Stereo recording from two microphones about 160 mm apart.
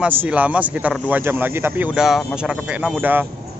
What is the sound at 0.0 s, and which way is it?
Speech, 10° right (ahead or behind).